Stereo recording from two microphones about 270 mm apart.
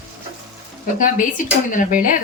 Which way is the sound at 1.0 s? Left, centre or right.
Left.